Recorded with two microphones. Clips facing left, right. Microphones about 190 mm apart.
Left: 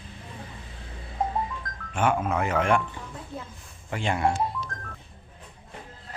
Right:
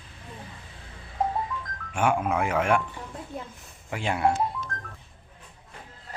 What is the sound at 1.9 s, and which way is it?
Speech, 10° right (ahead or behind).